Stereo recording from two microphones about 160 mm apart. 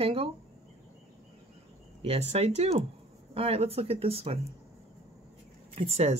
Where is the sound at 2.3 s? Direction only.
40° right (ahead or behind).